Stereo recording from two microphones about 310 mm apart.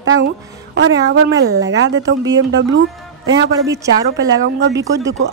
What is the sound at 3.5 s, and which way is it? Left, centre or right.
A woman's voice, centre.